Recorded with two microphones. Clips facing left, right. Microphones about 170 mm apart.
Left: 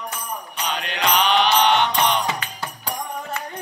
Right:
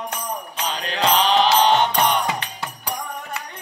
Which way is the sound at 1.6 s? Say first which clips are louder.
Right 1 dB; 40° right (ahead or behind).